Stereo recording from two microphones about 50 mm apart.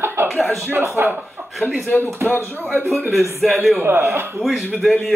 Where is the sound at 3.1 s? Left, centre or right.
Right.